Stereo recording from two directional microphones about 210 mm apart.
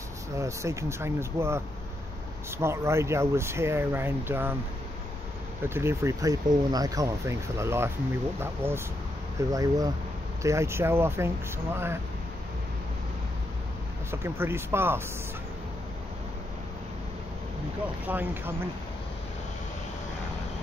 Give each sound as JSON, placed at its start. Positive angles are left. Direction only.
{"t": 0.4, "sound": "speech", "side_deg": -15}
{"t": 2.6, "sound": "speech", "side_deg": -10}
{"t": 5.6, "sound": "speech", "side_deg": -10}
{"t": 14.2, "sound": "speech", "side_deg": -10}
{"t": 18.0, "sound": "speech", "side_deg": -10}